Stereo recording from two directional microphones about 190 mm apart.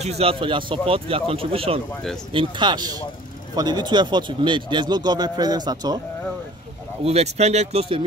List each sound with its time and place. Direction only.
0.0 s speech: 30° right (ahead or behind)
7.1 s speech: 35° right (ahead or behind)